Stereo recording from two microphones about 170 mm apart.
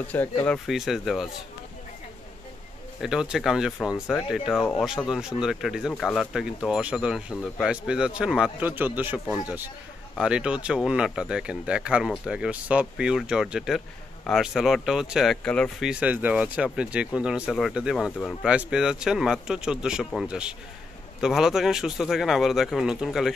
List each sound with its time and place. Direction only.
0.1 s speech: 10° left (ahead or behind)
0.7 s speech: centre (ahead or behind)
3.0 s a man's voice: 5° right (ahead or behind)
15.9 s speech: 10° right (ahead or behind)